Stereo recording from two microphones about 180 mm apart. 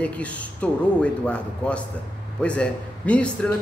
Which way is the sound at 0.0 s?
5° left (ahead or behind).